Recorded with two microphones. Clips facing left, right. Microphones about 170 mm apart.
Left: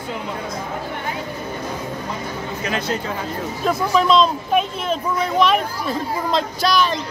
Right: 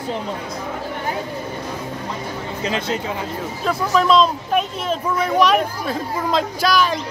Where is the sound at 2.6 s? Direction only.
25° right (ahead or behind).